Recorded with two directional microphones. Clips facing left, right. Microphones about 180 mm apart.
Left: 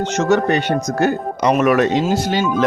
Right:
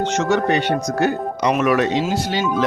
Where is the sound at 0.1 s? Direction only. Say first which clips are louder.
Left 4 dB; 40° left (ahead or behind).